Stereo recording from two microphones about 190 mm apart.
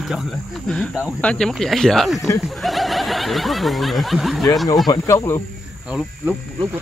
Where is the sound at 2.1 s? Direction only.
15° left (ahead or behind).